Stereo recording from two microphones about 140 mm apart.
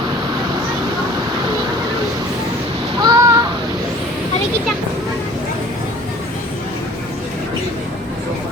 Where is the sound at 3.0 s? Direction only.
25° right (ahead or behind).